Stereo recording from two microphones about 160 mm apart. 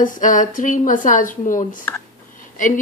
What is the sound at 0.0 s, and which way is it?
A woman's voice, 55° left (ahead or behind).